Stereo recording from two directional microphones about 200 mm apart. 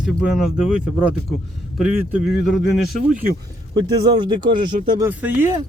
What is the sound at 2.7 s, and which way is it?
Speech, centre (ahead or behind).